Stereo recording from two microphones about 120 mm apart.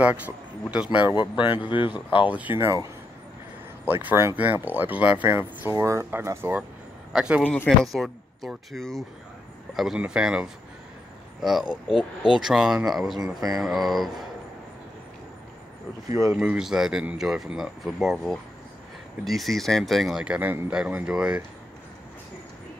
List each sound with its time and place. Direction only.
0.7 s speech: 10° right (ahead or behind)
1.0 s speech: 40° left (ahead or behind)
2.2 s speech: 15° right (ahead or behind)
3.8 s speech: 15° right (ahead or behind)
7.1 s a man's voice: 5° right (ahead or behind)
7.4 s speech: 10° left (ahead or behind)
16.1 s speech: 25° right (ahead or behind)
16.3 s speech: 5° right (ahead or behind)